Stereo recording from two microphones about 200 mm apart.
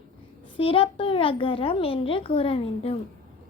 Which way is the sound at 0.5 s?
25° left (ahead or behind).